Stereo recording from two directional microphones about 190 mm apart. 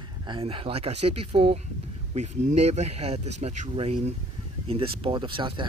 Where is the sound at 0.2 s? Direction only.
25° right (ahead or behind).